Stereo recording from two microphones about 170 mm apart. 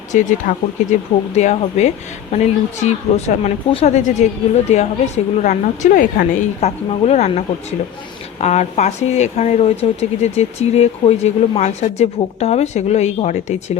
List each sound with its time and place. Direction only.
0.1 s speech: 45° left (ahead or behind)